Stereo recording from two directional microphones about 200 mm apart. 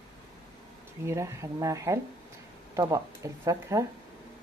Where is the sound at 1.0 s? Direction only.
15° right (ahead or behind).